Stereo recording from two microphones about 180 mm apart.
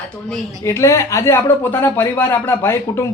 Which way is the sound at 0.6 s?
15° left (ahead or behind).